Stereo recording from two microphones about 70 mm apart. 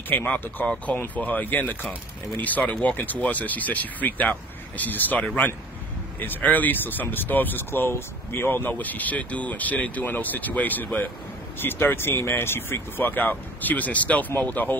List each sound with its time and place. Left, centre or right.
0.1 s speech: left